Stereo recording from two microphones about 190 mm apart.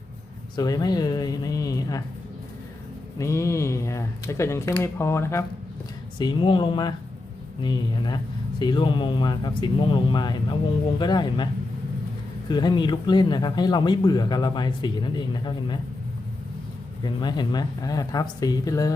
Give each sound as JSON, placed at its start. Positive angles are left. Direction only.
{"t": 0.5, "sound": "speech", "side_deg": 20}
{"t": 3.2, "sound": "speech", "side_deg": 15}
{"t": 6.1, "sound": "speech", "side_deg": 25}
{"t": 12.5, "sound": "speech", "side_deg": 20}
{"t": 17.0, "sound": "speech", "side_deg": 20}